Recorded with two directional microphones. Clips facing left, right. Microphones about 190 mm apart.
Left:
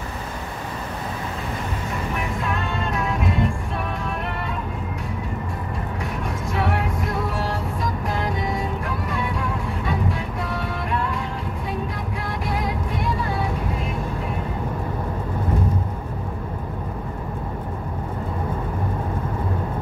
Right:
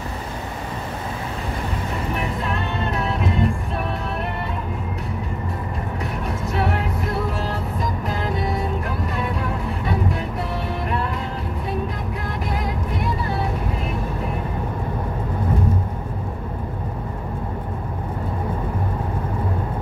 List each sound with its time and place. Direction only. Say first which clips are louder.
3.0 s music: right 1 dB; 25° right (ahead or behind)